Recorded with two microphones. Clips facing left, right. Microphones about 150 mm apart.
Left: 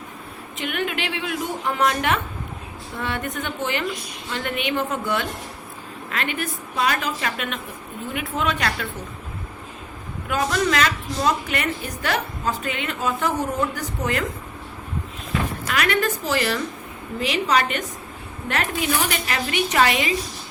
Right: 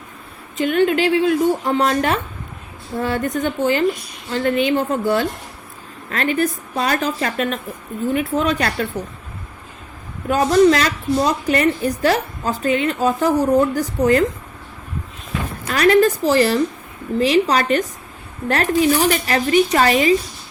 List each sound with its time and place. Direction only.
0.5 s a woman's voice: 35° right (ahead or behind)
10.2 s a woman's voice: 35° right (ahead or behind)
15.6 s a woman's voice: 35° right (ahead or behind)